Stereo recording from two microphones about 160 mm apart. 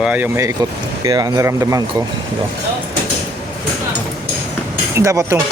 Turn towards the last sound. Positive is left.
turn(degrees=-20)  # may be behind; listen again after turning